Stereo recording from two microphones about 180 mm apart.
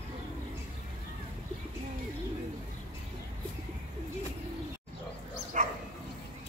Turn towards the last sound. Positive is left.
turn(degrees=-40)  # may be behind; listen again after turning